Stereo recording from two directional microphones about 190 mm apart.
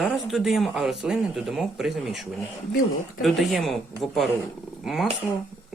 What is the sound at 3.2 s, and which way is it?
Speech, centre (ahead or behind).